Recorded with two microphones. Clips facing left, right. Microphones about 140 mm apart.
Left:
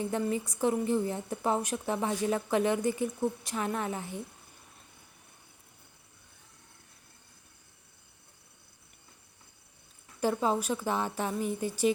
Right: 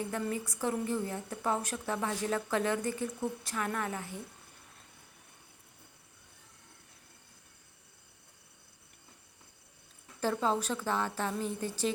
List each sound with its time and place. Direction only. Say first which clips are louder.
0.1 s a woman's voice: left 4 dB; 20° left (ahead or behind)
10.2 s a woman's voice: left 2 dB; 15° left (ahead or behind)